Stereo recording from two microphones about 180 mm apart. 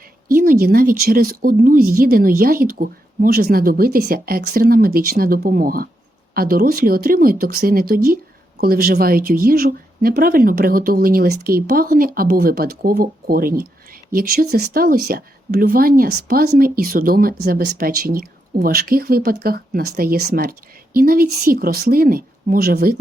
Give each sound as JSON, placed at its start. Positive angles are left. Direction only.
{"t": 0.3, "sound": "speech", "side_deg": -50}